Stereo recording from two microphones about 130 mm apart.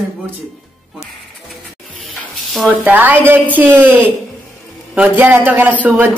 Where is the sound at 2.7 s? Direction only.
15° right (ahead or behind).